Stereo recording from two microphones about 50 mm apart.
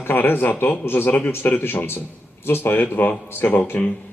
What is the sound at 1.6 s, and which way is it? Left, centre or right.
A man's voice, left.